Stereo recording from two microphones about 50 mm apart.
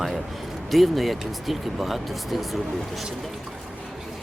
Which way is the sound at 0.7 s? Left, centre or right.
Centre.